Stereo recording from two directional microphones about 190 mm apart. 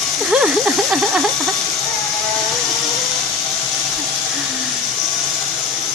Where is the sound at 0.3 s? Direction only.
Centre (ahead or behind).